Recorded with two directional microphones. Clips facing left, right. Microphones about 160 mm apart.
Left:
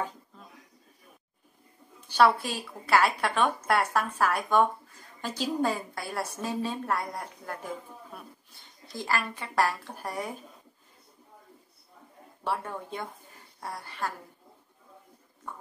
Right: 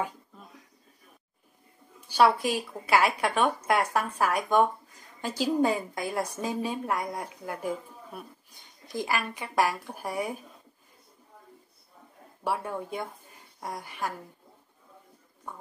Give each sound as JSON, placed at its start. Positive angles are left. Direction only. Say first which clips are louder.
{"t": 2.0, "sound": "a woman's voice", "louder": "right 1 dB", "side_deg": -10}
{"t": 12.4, "sound": "a woman's voice", "louder": "right 2 dB", "side_deg": -10}